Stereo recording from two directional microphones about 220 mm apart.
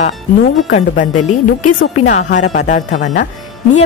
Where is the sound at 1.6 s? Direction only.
90° left.